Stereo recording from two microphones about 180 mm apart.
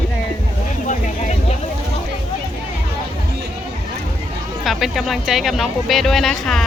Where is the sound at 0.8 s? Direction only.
45° left (ahead or behind).